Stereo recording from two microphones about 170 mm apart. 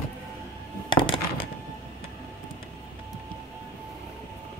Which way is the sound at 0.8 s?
30° left (ahead or behind).